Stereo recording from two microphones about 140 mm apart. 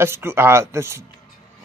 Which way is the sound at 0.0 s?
15° right (ahead or behind).